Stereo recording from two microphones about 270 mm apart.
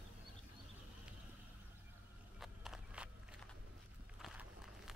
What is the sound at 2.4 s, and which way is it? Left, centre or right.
Walk, centre.